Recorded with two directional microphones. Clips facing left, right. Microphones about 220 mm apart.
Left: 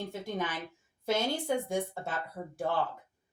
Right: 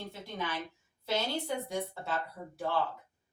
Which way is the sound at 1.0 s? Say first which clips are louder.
Left 3 dB; 50° left (ahead or behind).